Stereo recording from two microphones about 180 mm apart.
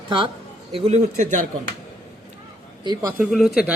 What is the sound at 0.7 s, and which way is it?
Speech, 35° right (ahead or behind).